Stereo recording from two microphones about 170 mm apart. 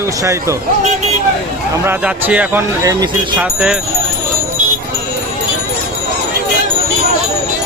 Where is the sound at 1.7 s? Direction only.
10° right (ahead or behind).